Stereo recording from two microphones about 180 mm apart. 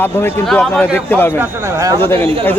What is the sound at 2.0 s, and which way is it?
Speech, 10° left (ahead or behind).